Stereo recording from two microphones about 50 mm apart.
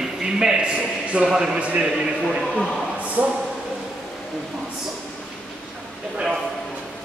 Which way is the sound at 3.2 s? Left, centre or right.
Right.